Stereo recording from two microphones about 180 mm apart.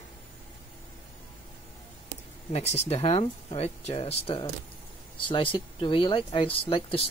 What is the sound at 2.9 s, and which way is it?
Speech, 35° left (ahead or behind).